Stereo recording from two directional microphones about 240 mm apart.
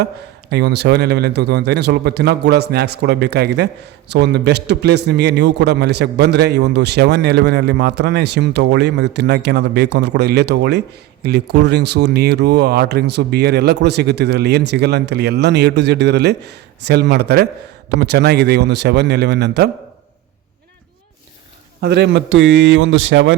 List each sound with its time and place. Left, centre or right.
0.5 s speech: right
21.8 s speech: right